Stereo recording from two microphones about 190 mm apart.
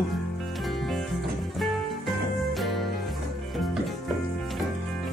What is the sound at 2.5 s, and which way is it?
Music, centre (ahead or behind).